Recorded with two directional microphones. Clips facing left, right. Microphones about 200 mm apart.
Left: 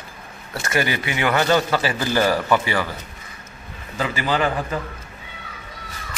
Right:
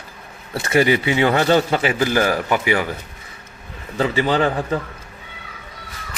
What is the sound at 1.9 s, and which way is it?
Speech, 10° right (ahead or behind).